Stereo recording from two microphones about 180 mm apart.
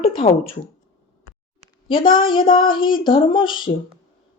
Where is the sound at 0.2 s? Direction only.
35° left (ahead or behind).